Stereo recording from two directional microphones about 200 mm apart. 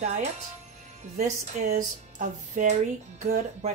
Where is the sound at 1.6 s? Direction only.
35° right (ahead or behind).